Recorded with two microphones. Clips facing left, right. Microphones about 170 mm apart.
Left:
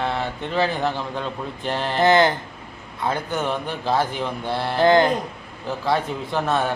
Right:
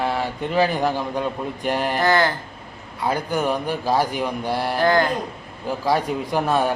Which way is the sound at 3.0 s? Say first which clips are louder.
Right 2 dB; 10° right (ahead or behind).